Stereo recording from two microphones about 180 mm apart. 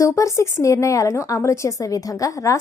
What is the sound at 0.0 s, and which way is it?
Speech, 15° left (ahead or behind).